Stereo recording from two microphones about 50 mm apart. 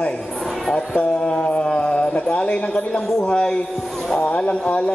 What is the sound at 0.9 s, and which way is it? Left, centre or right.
Mantra, centre.